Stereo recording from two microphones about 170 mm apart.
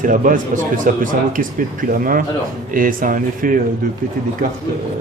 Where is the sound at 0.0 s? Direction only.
50° right (ahead or behind).